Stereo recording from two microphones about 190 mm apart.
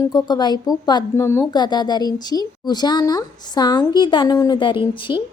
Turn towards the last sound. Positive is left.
turn(degrees=25)  # may be behind; listen again after turning